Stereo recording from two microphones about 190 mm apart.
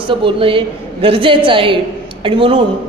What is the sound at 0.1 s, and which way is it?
A woman's voice, 25° right (ahead or behind).